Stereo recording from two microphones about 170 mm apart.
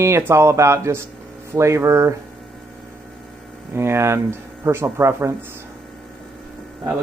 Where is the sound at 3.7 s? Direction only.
15° right (ahead or behind).